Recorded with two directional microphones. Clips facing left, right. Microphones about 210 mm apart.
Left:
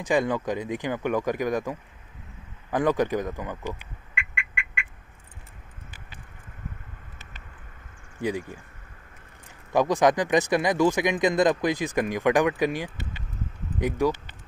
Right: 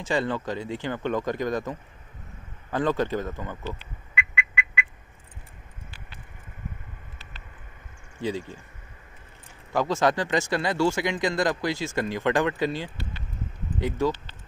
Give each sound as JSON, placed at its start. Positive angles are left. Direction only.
{"t": 0.0, "sound": "speech", "side_deg": 15}
{"t": 8.2, "sound": "speech", "side_deg": 15}
{"t": 9.7, "sound": "speech", "side_deg": 15}